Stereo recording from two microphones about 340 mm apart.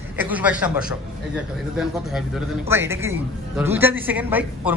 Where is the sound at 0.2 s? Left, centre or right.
Centre.